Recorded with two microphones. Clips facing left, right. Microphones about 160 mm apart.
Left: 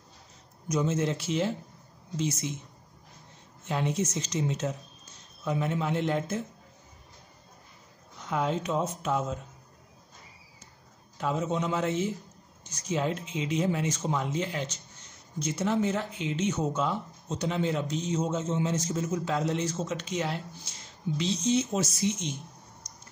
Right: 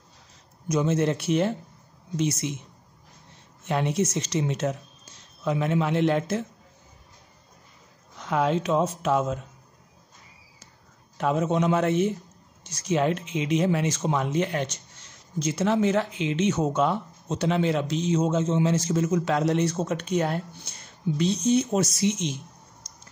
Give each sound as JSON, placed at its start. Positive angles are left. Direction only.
{"t": 0.7, "sound": "a man's voice", "side_deg": -75}
{"t": 2.1, "sound": "speech", "side_deg": -70}
{"t": 3.6, "sound": "speech", "side_deg": -70}
{"t": 5.4, "sound": "speech", "side_deg": -85}
{"t": 8.2, "sound": "speech", "side_deg": -80}
{"t": 11.1, "sound": "a man's voice", "side_deg": -65}
{"t": 12.7, "sound": "speech", "side_deg": -75}
{"t": 22.8, "sound": "a sound", "side_deg": -90}